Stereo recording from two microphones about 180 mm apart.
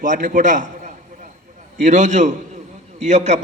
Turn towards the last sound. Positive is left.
turn(degrees=-40)  # may be behind; listen again after turning